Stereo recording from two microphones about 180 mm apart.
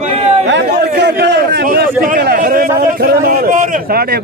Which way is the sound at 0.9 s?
60° right (ahead or behind).